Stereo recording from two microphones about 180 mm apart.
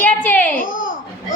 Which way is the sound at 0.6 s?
50° left (ahead or behind).